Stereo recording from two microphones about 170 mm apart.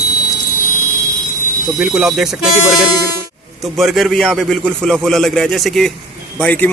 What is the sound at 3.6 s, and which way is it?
A man's voice, centre (ahead or behind).